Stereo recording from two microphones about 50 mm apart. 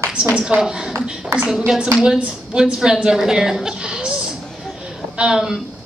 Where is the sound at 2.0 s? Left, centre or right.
Centre.